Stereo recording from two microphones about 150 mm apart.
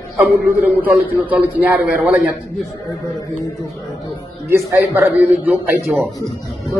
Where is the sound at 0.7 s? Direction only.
10° right (ahead or behind).